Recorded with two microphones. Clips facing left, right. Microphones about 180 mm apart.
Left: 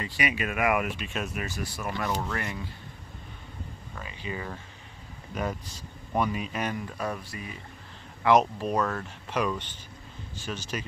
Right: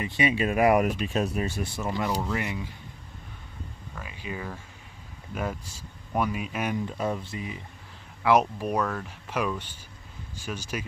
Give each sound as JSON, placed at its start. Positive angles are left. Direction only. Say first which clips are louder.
{"t": 0.0, "sound": "speech", "louder": "right 5 dB", "side_deg": -25}
{"t": 4.0, "sound": "speech", "louder": "even", "side_deg": -5}
{"t": 6.9, "sound": "speech", "louder": "right 3 dB", "side_deg": -20}
{"t": 8.2, "sound": "speech", "louder": "even", "side_deg": -10}